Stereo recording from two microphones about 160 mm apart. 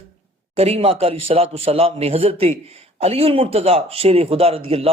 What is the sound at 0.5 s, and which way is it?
A man's voice, 40° right (ahead or behind).